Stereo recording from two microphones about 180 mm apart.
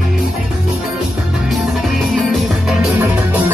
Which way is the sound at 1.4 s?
Centre (ahead or behind).